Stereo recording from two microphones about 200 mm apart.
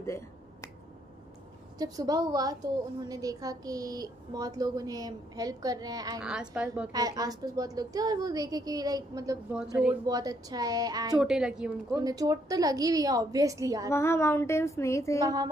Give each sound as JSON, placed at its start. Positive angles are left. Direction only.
{"t": 0.0, "sound": "finger snapping", "side_deg": 15}
{"t": 1.8, "sound": "a woman's voice", "side_deg": -20}
{"t": 6.2, "sound": "a woman's voice", "side_deg": -5}
{"t": 6.9, "sound": "a woman's voice", "side_deg": -20}
{"t": 11.1, "sound": "a woman's voice", "side_deg": -5}
{"t": 11.9, "sound": "a woman's voice", "side_deg": -20}
{"t": 13.8, "sound": "a woman's voice", "side_deg": 15}
{"t": 15.2, "sound": "speech", "side_deg": -20}